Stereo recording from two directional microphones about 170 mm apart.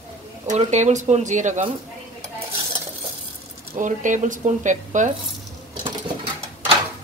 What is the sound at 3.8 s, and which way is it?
Speech, 50° right (ahead or behind).